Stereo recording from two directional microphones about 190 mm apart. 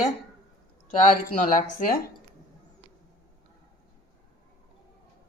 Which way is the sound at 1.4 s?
45° left (ahead or behind).